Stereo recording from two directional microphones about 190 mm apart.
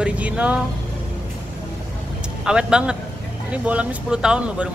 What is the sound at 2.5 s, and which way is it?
Speech, 5° right (ahead or behind).